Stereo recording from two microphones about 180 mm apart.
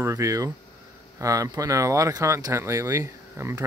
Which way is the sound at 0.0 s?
15° right (ahead or behind).